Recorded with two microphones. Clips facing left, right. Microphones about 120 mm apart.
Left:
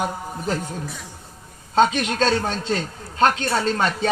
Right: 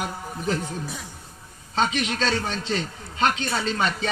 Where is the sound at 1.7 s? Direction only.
45° left (ahead or behind).